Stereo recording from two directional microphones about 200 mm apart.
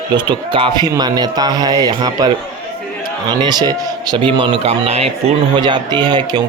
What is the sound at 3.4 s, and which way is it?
Speech, 20° right (ahead or behind).